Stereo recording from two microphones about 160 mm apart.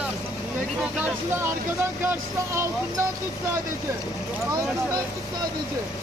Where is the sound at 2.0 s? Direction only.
15° right (ahead or behind).